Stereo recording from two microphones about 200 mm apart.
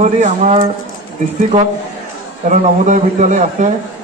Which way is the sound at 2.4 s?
40° right (ahead or behind).